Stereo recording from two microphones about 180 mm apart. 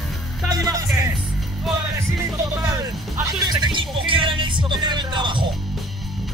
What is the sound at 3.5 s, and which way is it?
Music, 25° right (ahead or behind).